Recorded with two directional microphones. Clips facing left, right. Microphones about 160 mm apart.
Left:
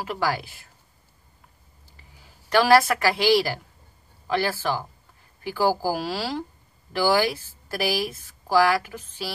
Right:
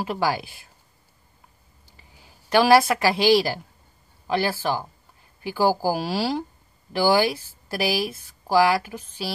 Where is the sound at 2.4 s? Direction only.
15° right (ahead or behind).